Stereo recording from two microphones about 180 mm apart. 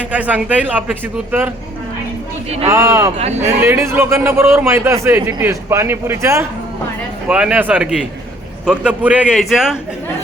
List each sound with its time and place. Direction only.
0.1 s a man's voice: 10° right (ahead or behind)
2.6 s a man's voice: 15° right (ahead or behind)